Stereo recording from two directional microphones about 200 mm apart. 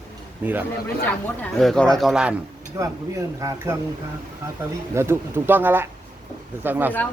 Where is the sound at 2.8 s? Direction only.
15° right (ahead or behind).